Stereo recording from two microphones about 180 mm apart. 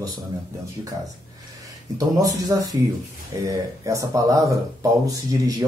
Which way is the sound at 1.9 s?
20° right (ahead or behind).